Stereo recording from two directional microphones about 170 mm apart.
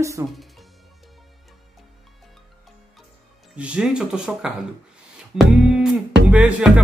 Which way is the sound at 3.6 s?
5° right (ahead or behind).